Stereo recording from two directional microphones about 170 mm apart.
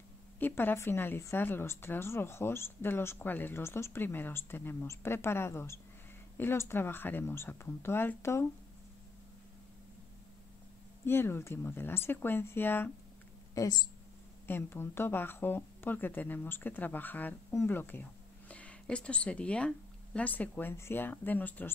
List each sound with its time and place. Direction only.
0.4 s a woman's voice: 10° left (ahead or behind)
11.1 s a woman's voice: 15° left (ahead or behind)
13.6 s a woman's voice: 25° left (ahead or behind)